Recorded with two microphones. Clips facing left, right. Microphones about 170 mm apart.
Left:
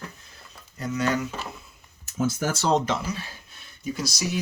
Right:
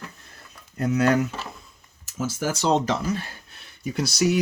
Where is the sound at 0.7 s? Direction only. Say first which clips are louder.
Right 5 dB; 55° right (ahead or behind).